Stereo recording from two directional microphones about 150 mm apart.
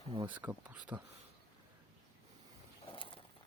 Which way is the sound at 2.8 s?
35° left (ahead or behind).